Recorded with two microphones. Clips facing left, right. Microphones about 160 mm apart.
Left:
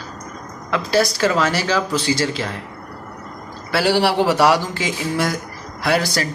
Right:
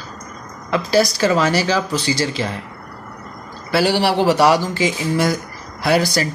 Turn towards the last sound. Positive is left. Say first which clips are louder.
# right 2 dB
turn(degrees=-5)  # may be behind; listen again after turning